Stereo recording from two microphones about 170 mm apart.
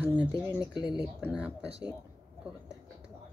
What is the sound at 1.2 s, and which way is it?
Speech, 5° right (ahead or behind).